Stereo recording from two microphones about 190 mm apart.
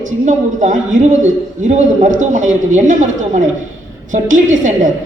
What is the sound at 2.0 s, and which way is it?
A woman's voice, 40° right (ahead or behind).